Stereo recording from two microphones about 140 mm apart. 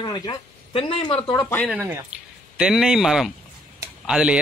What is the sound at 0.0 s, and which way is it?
Speech, 30° left (ahead or behind).